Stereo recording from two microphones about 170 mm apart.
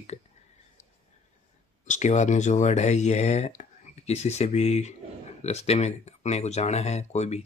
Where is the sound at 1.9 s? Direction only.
45° left (ahead or behind).